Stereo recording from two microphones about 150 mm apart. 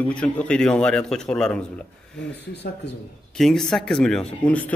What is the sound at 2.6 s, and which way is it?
Speech, 90° left.